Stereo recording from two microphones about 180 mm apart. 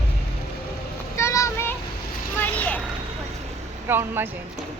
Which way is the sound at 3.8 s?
10° right (ahead or behind).